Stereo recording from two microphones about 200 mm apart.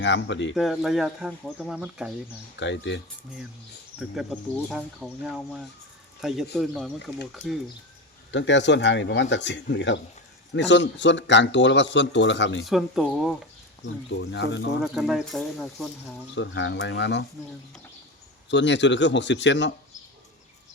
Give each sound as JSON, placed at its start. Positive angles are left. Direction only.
{"t": 0.0, "sound": "speech", "side_deg": 65}
{"t": 0.5, "sound": "speech", "side_deg": 0}
{"t": 2.6, "sound": "speech", "side_deg": 65}
{"t": 3.9, "sound": "speech", "side_deg": 0}
{"t": 6.2, "sound": "speech", "side_deg": 0}
{"t": 8.3, "sound": "speech", "side_deg": 65}
{"t": 12.6, "sound": "speech", "side_deg": -5}
{"t": 14.2, "sound": "speech", "side_deg": 60}
{"t": 14.9, "sound": "speech", "side_deg": 0}
{"t": 16.3, "sound": "speech", "side_deg": 65}
{"t": 18.5, "sound": "speech", "side_deg": 65}